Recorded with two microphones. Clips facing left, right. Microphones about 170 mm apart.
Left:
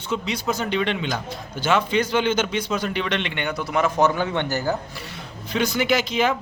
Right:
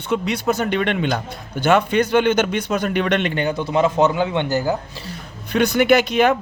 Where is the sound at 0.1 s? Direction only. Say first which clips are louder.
Right 5 dB; 55° right (ahead or behind).